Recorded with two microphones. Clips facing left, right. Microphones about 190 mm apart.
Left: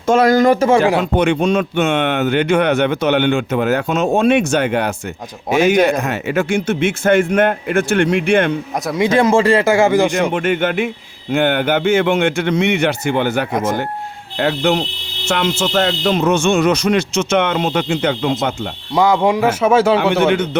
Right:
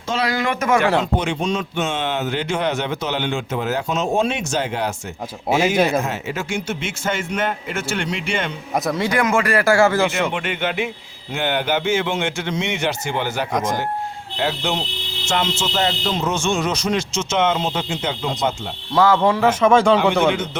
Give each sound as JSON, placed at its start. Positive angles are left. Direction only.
{"t": 0.1, "sound": "speech", "side_deg": 45}
{"t": 1.1, "sound": "speech", "side_deg": 60}
{"t": 6.0, "sound": "speech", "side_deg": 60}
{"t": 9.0, "sound": "speech", "side_deg": 25}
{"t": 10.2, "sound": "speech", "side_deg": 45}
{"t": 18.9, "sound": "a man's voice", "side_deg": 15}
{"t": 20.3, "sound": "speech", "side_deg": 60}